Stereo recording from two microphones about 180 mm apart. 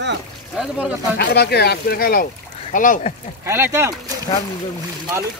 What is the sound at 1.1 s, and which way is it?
Speech, 60° left (ahead or behind).